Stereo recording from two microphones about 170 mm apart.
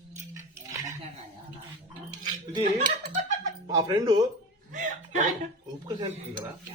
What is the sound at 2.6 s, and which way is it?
Speech, 45° right (ahead or behind).